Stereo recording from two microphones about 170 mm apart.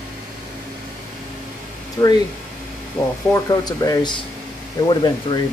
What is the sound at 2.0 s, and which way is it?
Speech, 15° left (ahead or behind).